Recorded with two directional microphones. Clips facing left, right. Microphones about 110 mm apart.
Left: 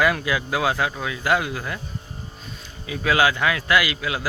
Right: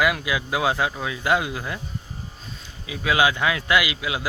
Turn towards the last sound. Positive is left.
turn(degrees=-15)  # may be behind; listen again after turning